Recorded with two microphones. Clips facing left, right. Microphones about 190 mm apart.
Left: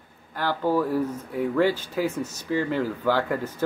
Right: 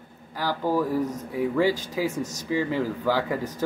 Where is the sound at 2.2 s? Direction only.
40° right (ahead or behind).